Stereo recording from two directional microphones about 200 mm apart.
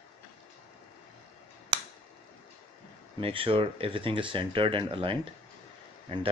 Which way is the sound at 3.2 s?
25° right (ahead or behind).